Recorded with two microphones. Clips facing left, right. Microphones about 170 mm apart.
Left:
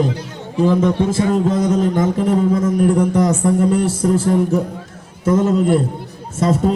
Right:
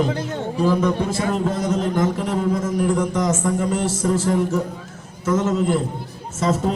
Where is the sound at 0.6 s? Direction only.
20° left (ahead or behind).